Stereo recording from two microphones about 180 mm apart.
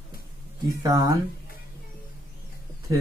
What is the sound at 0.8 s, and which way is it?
Speech, 20° right (ahead or behind).